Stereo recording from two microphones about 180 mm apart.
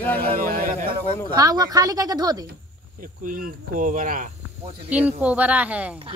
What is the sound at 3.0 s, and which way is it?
Cricket, 50° right (ahead or behind).